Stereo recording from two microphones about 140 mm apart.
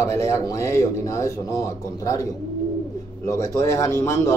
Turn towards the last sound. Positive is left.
turn(degrees=20)  # may be behind; listen again after turning